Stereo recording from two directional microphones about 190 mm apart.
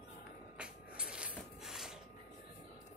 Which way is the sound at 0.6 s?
5° right (ahead or behind).